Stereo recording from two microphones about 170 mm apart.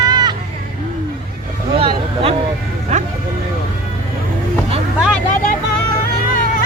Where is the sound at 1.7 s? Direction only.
35° right (ahead or behind).